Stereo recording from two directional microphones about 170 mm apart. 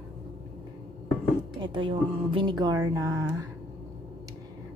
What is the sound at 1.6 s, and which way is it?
Speech, 30° right (ahead or behind).